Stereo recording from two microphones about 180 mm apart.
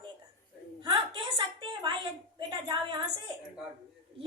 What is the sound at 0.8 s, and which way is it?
A woman's voice, 25° right (ahead or behind).